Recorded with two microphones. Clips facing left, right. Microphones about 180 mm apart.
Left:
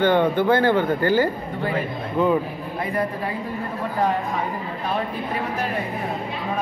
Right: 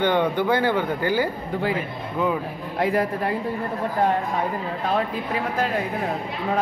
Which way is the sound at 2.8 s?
90° right.